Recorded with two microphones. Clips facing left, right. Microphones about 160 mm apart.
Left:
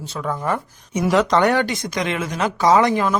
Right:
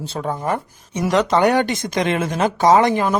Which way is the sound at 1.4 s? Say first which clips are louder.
Right 1 dB; 15° right (ahead or behind).